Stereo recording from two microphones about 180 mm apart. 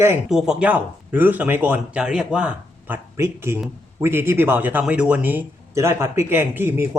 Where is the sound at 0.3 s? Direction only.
Centre (ahead or behind).